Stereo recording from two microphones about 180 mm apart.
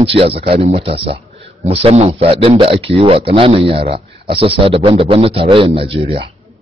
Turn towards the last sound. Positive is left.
turn(degrees=-30)  # may be behind; listen again after turning